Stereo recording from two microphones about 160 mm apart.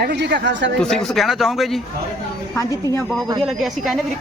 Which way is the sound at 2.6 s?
20° left (ahead or behind).